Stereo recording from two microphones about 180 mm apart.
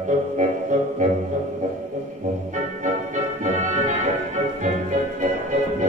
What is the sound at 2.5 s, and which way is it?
Music, 45° right (ahead or behind).